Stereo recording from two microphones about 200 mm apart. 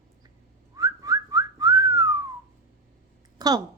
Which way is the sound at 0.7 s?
15° right (ahead or behind).